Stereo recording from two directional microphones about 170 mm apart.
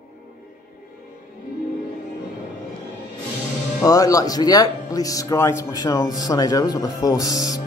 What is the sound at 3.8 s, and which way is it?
Speech, 20° left (ahead or behind).